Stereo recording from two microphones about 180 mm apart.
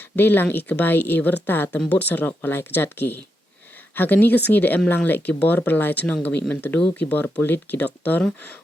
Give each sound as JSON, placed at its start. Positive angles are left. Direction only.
{"t": 0.2, "sound": "speech", "side_deg": 10}